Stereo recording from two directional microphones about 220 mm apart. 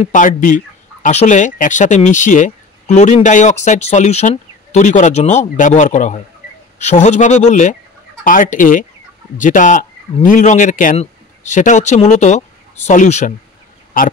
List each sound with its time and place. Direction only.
0.0 s speech: 35° left (ahead or behind)